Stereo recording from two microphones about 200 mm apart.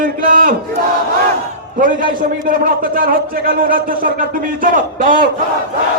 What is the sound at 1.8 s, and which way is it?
A man's voice, 45° right (ahead or behind).